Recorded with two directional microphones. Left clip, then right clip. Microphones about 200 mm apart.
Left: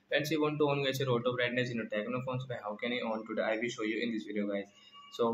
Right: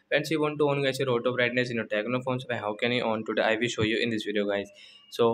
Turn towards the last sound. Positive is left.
turn(degrees=-40)  # may be behind; listen again after turning